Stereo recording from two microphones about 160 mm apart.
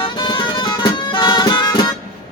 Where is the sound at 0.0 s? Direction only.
30° left (ahead or behind).